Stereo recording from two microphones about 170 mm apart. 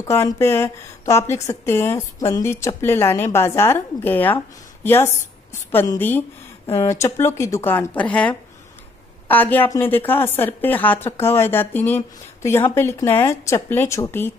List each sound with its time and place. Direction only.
0.0 s a woman's voice: 15° left (ahead or behind)